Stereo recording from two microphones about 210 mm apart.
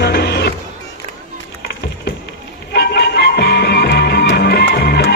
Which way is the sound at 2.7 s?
50° left (ahead or behind).